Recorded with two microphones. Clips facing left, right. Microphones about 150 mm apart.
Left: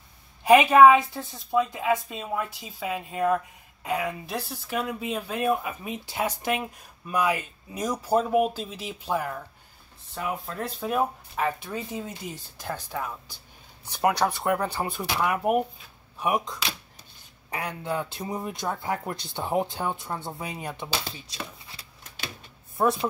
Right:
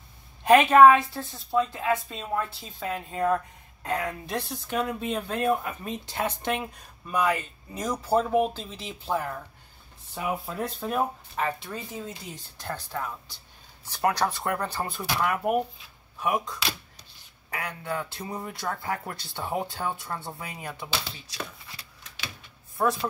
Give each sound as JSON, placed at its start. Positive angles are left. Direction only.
{"t": 0.4, "sound": "a woman's voice", "side_deg": 10}
{"t": 10.1, "sound": "speech", "side_deg": -5}
{"t": 11.4, "sound": "a woman's voice", "side_deg": 15}
{"t": 22.8, "sound": "a woman's voice", "side_deg": 15}